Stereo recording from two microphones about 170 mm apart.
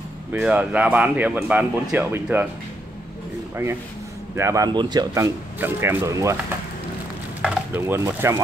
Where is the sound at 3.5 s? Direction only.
15° right (ahead or behind).